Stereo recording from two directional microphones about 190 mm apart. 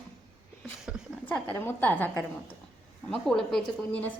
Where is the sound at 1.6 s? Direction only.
10° left (ahead or behind).